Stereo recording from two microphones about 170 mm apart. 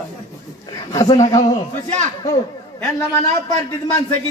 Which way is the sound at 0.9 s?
20° left (ahead or behind).